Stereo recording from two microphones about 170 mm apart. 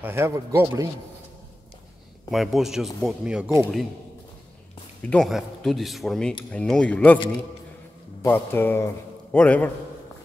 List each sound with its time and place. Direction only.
0.0 s speech: 15° right (ahead or behind)
2.3 s speech: centre (ahead or behind)
5.1 s a man's voice: centre (ahead or behind)